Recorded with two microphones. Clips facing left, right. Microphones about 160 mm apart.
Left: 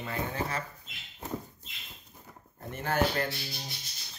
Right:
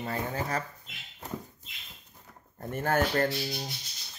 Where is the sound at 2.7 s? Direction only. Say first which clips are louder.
Right 2 dB; 45° right (ahead or behind).